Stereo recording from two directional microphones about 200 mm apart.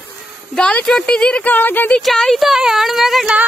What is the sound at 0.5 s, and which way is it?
Speech, 5° left (ahead or behind).